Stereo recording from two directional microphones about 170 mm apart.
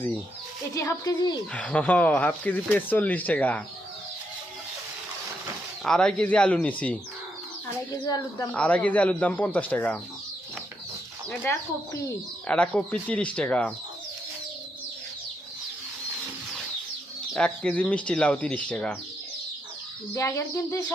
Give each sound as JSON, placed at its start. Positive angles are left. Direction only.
{"t": 0.7, "sound": "speech", "side_deg": 20}
{"t": 1.5, "sound": "speech", "side_deg": 5}
{"t": 5.8, "sound": "speech", "side_deg": 5}
{"t": 8.0, "sound": "speech", "side_deg": 20}
{"t": 8.5, "sound": "speech", "side_deg": 5}
{"t": 12.5, "sound": "speech", "side_deg": 5}
{"t": 17.3, "sound": "speech", "side_deg": 5}
{"t": 20.1, "sound": "speech", "side_deg": 15}